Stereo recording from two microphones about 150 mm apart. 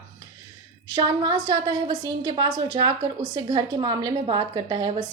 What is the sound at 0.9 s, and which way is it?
A woman's voice, 30° right (ahead or behind).